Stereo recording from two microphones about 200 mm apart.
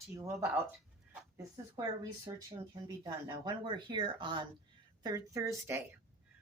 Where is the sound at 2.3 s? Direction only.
20° right (ahead or behind).